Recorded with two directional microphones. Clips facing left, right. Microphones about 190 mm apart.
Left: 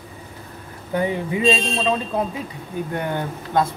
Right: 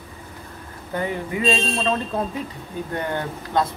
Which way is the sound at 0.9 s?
15° left (ahead or behind).